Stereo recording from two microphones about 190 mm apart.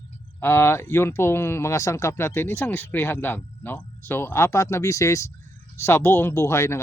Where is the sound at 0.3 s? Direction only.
10° left (ahead or behind).